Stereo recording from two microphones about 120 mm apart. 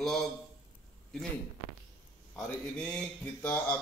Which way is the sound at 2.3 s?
10° left (ahead or behind).